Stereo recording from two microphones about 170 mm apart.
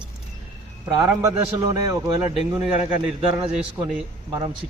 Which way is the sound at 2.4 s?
Centre (ahead or behind).